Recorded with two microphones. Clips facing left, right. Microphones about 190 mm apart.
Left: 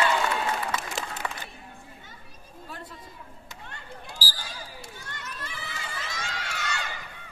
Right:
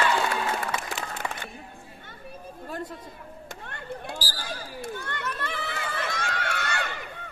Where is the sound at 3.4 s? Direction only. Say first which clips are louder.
Right 8 dB; 60° right (ahead or behind).